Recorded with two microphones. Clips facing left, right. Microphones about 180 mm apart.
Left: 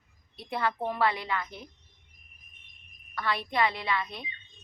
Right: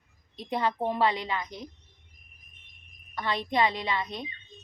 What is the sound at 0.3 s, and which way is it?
A woman's voice, 20° right (ahead or behind).